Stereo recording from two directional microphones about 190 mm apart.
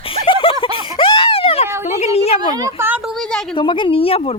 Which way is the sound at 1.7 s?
15° right (ahead or behind).